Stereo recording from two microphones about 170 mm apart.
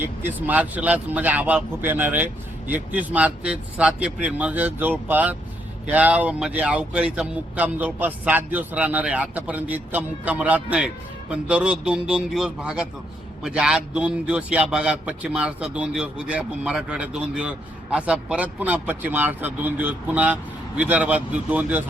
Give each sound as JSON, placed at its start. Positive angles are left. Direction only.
{"t": 0.0, "sound": "speech", "side_deg": -10}